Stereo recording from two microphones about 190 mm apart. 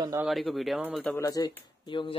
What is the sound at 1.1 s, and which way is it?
Speech, 15° left (ahead or behind).